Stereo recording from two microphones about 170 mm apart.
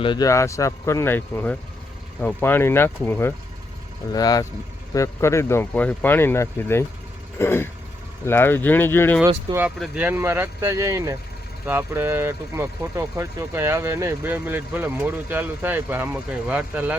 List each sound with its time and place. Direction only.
0.0 s speech: 25° left (ahead or behind)
9.2 s speech: 15° right (ahead or behind)
9.6 s speech: 5° right (ahead or behind)